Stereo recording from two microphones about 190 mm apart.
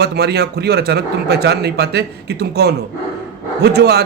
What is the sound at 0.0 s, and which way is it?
A man's voice, 60° right (ahead or behind).